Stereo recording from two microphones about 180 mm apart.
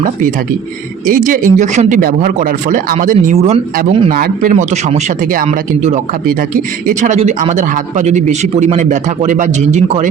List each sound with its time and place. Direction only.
1.0 s speech: 50° right (ahead or behind)